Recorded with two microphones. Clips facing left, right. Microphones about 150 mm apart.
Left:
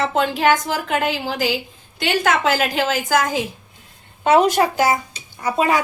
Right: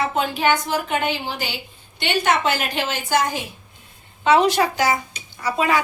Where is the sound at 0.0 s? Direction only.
85° left.